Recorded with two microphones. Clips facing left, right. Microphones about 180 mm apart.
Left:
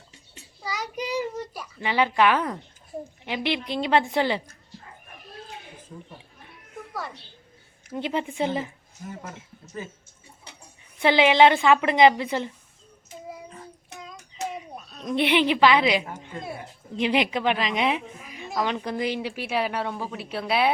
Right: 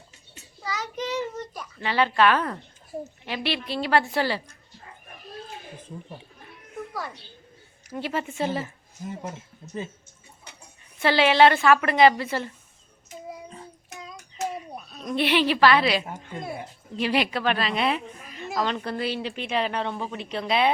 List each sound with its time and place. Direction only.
0.6 s a sound: 10° left (ahead or behind)
3.2 s a woman's voice: 15° left (ahead or behind)
7.9 s a woman's voice: 20° left (ahead or behind)
11.0 s a woman's voice: 15° left (ahead or behind)
15.0 s a woman's voice: 20° left (ahead or behind)